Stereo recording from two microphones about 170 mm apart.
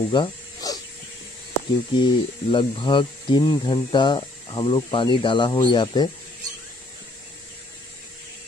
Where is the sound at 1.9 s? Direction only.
30° left (ahead or behind).